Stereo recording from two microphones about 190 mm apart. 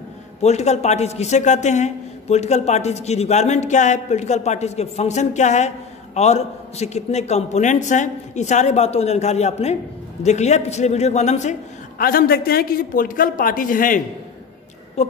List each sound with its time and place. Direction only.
0.4 s a man's voice: 35° left (ahead or behind)
12.0 s a man's voice: 50° left (ahead or behind); by 15.1 s 35° left (ahead or behind)